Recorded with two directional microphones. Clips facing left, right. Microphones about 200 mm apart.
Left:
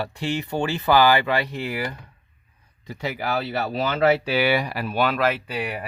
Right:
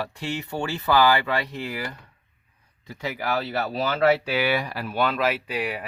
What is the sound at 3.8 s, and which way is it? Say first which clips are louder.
Speech: left 1 dB; 25° left (ahead or behind).